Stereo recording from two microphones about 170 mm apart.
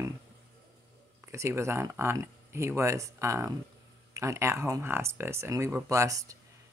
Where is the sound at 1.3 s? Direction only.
15° right (ahead or behind).